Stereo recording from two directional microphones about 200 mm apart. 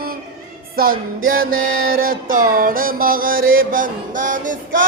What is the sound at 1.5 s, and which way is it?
Music, 85° right.